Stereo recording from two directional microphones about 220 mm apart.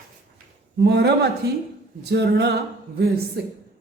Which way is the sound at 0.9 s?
50° right (ahead or behind).